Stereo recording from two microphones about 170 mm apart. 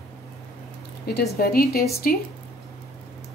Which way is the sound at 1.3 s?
60° left (ahead or behind).